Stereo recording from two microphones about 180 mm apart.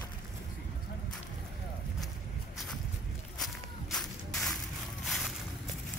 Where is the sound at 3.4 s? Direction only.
Centre (ahead or behind).